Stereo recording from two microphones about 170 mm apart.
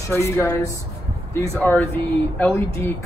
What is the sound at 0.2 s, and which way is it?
Speech, 20° left (ahead or behind).